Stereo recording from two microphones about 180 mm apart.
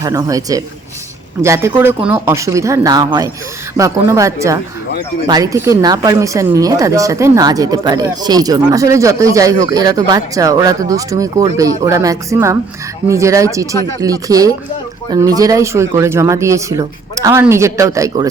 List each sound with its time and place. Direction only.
0.0 s speech: 20° right (ahead or behind)